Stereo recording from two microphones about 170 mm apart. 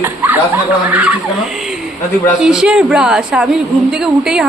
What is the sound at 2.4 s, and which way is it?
A woman's voice, 5° right (ahead or behind).